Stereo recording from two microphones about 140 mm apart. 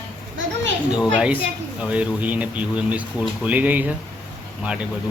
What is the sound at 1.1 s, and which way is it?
Speech, 10° right (ahead or behind).